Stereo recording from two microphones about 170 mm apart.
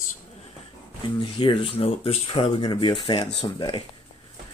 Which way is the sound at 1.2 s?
30° left (ahead or behind).